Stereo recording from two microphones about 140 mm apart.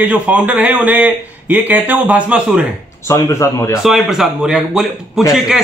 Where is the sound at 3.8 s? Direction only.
Centre (ahead or behind).